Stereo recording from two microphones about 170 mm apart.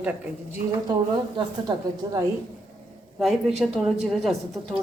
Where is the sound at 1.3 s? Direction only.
25° right (ahead or behind).